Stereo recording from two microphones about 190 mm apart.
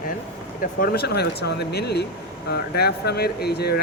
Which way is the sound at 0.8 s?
55° left (ahead or behind).